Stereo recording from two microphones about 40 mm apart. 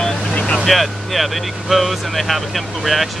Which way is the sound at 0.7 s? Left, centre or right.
Centre.